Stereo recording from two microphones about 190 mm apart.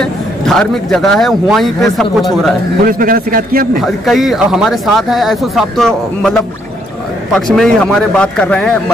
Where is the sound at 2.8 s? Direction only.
50° right (ahead or behind).